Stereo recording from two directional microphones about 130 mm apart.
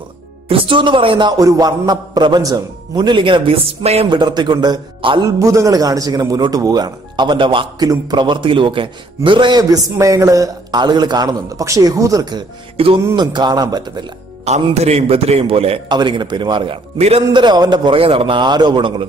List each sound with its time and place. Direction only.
0.5 s a man's voice: 40° right (ahead or behind)
4.1 s a man's voice: 35° right (ahead or behind)
5.4 s speech: 25° right (ahead or behind)
12.7 s a man's voice: 45° right (ahead or behind)
13.1 s a man's voice: 35° right (ahead or behind)
14.4 s a man's voice: 55° right (ahead or behind)
15.9 s a man's voice: 35° right (ahead or behind)